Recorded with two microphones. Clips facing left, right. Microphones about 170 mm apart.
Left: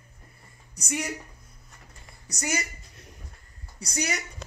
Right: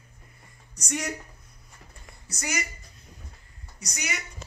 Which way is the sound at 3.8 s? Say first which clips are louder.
Left 5 dB; 35° left (ahead or behind).